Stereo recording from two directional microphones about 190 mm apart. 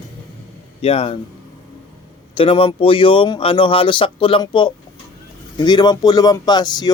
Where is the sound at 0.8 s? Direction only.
30° left (ahead or behind).